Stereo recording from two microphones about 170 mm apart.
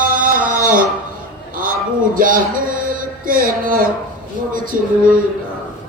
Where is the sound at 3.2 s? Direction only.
55° right (ahead or behind).